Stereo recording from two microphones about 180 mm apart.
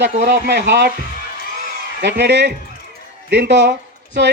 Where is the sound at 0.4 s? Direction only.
75° right (ahead or behind).